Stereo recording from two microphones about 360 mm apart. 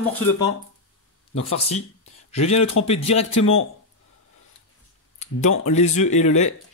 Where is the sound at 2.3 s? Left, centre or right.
Centre.